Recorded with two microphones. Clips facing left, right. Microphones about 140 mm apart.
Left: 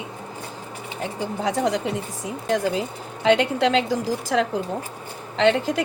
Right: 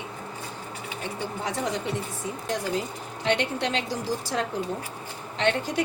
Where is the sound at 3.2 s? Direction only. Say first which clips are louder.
Left 7 dB; 90° left.